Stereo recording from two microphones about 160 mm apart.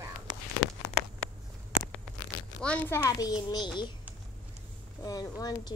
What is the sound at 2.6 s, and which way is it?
Speech, 10° left (ahead or behind).